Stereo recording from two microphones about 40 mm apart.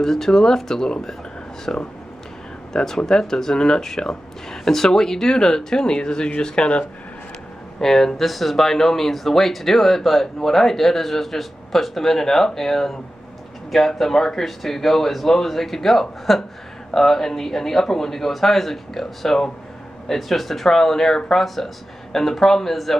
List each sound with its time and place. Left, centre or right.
0.0 s speech: centre
1.7 s speech: left
7.8 s speech: centre